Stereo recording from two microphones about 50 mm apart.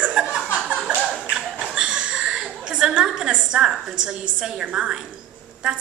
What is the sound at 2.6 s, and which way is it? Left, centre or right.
A woman's voice, centre.